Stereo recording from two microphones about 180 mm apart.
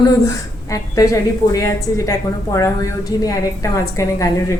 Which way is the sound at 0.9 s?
20° left (ahead or behind).